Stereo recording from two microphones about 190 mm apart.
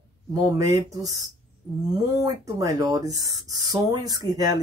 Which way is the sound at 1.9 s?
20° right (ahead or behind).